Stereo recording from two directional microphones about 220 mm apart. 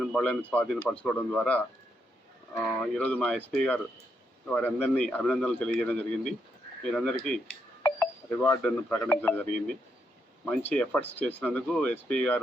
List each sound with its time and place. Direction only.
0.0 s speech: 5° left (ahead or behind)
8.4 s speech: 5° left (ahead or behind)